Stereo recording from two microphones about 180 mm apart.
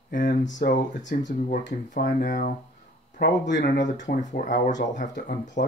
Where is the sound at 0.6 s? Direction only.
55° left (ahead or behind).